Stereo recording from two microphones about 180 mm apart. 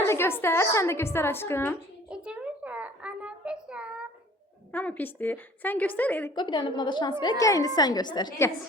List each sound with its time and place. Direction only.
0.0 s a woman's voice: 15° left (ahead or behind)
2.0 s a sound: 5° right (ahead or behind)
4.7 s a woman's voice: 10° left (ahead or behind)
6.3 s a woman's voice: 25° left (ahead or behind)